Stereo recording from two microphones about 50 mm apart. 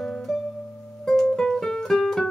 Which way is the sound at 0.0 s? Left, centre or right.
Centre.